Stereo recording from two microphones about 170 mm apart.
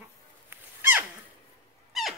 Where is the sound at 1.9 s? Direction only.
Centre (ahead or behind).